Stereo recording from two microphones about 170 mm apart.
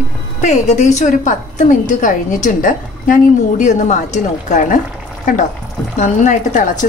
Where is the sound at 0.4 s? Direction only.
45° left (ahead or behind).